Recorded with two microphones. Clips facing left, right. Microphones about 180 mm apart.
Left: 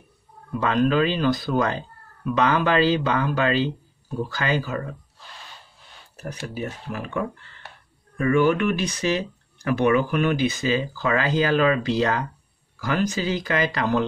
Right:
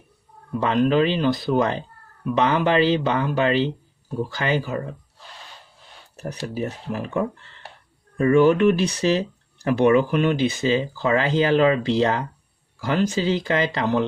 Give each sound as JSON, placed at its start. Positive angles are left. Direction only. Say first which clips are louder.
{"t": 0.6, "sound": "speech", "louder": "right 2 dB", "side_deg": -25}
{"t": 6.2, "sound": "speech", "louder": "right 3 dB", "side_deg": -35}